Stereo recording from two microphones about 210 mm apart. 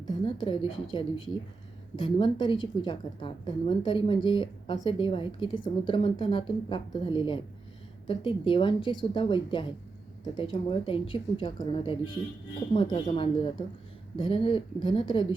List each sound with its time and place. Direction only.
0.3 s a woman's voice: 25° left (ahead or behind)